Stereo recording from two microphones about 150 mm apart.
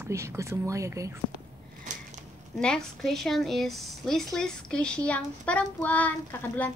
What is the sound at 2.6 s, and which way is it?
A woman's voice, 5° left (ahead or behind).